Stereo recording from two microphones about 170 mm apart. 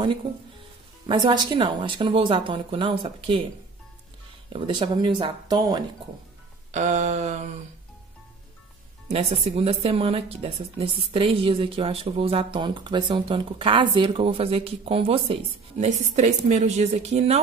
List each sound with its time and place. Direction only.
1.0 s a woman's voice: 25° right (ahead or behind)
4.5 s a woman's voice: 30° right (ahead or behind)
6.7 s mantra: 45° right (ahead or behind)
9.1 s a woman's voice: 40° right (ahead or behind)